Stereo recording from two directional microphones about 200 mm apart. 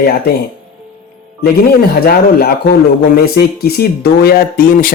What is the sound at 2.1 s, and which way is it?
Speech, 50° left (ahead or behind).